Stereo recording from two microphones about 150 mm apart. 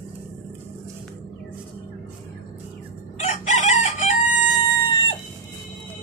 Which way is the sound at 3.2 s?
50° left (ahead or behind).